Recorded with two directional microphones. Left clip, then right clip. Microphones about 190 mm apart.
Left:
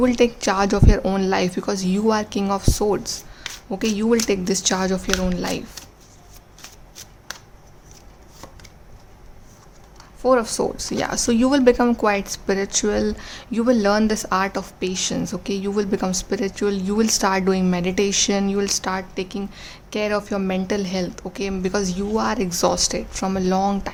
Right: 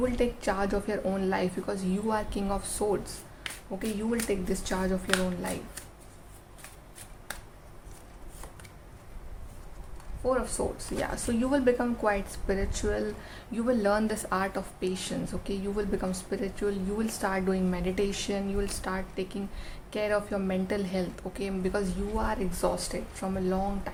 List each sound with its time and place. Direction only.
0.0 s speech: 45° left (ahead or behind)
10.2 s speech: 50° left (ahead or behind)